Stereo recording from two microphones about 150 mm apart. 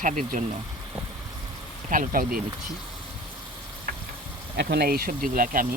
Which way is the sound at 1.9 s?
65° right (ahead or behind).